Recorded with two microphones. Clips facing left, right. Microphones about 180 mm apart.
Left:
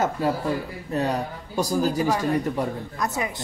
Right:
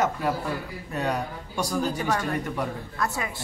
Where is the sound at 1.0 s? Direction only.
30° left (ahead or behind).